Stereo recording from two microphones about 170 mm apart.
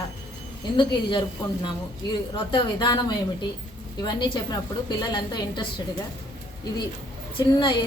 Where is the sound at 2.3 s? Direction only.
25° left (ahead or behind).